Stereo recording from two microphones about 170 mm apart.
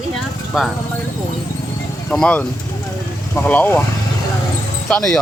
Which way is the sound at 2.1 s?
5° left (ahead or behind).